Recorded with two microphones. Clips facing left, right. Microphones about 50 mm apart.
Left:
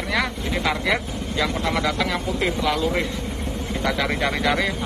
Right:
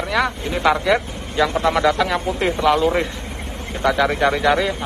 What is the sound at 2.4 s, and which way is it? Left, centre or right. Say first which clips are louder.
Speech: right 6 dB; right.